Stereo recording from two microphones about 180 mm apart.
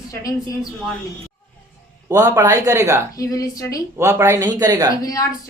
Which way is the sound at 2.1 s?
20° right (ahead or behind).